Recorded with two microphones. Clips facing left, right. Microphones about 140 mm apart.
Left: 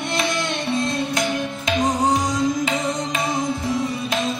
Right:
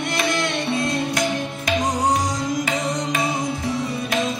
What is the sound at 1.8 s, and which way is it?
Music, centre (ahead or behind).